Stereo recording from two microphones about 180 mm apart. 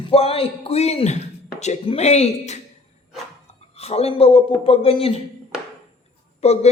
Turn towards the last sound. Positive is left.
turn(degrees=35)  # may be behind; listen again after turning